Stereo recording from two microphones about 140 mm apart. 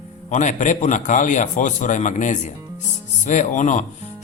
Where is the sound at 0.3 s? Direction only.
60° left (ahead or behind).